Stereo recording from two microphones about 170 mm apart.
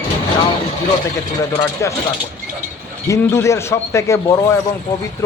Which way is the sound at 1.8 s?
15° left (ahead or behind).